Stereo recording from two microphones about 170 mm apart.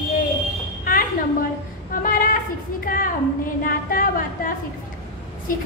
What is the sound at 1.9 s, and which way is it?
Female singing, 55° left (ahead or behind).